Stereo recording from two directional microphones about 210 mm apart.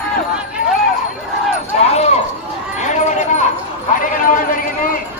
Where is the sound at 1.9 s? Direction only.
30° left (ahead or behind).